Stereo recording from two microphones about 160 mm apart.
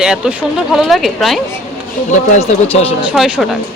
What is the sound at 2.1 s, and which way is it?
Speech, 40° left (ahead or behind).